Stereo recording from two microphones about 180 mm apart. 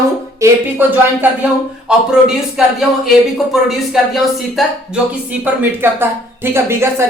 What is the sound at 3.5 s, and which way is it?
A woman's voice, centre (ahead or behind).